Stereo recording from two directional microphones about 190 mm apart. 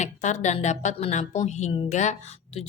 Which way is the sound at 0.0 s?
40° left (ahead or behind).